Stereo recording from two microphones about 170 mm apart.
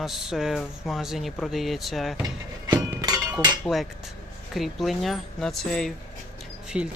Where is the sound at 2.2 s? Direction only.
25° right (ahead or behind).